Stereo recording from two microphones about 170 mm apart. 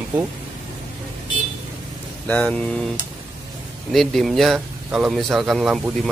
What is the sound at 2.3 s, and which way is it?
Speech, 5° left (ahead or behind).